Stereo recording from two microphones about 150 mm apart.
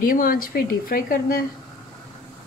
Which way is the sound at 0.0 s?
70° left (ahead or behind).